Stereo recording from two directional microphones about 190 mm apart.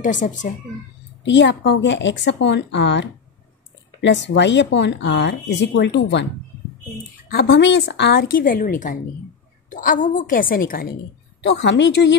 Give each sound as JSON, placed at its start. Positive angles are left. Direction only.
{"t": 0.0, "sound": "speech", "side_deg": 40}
{"t": 1.2, "sound": "speech", "side_deg": 70}
{"t": 7.2, "sound": "a woman's voice", "side_deg": 60}
{"t": 11.4, "sound": "speech", "side_deg": 70}